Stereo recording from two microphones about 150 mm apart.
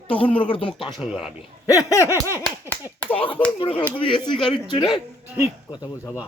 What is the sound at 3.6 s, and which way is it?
Speech, 40° left (ahead or behind).